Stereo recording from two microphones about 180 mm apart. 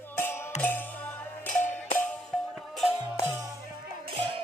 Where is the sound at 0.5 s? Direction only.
40° left (ahead or behind).